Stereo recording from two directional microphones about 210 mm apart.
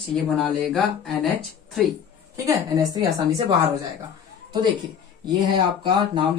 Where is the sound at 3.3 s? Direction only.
30° right (ahead or behind).